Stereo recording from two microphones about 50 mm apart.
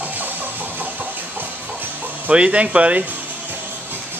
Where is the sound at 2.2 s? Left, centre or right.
Right.